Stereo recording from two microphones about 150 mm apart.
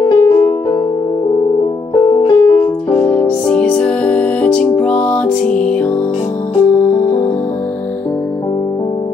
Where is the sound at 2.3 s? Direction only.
25° left (ahead or behind).